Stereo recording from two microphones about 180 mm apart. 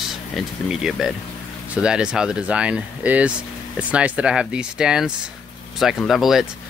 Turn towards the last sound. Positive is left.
turn(degrees=0)  # may be behind; listen again after turning